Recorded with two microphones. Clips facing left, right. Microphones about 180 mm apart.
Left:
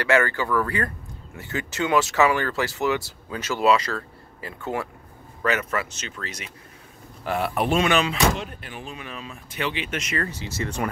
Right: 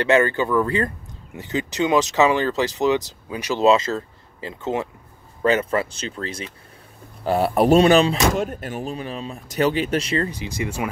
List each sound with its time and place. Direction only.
0.0 s speech: 20° right (ahead or behind)
10.3 s speech: 15° right (ahead or behind)